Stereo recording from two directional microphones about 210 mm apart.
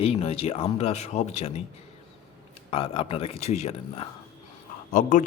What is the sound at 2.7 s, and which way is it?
Speech, 25° left (ahead or behind).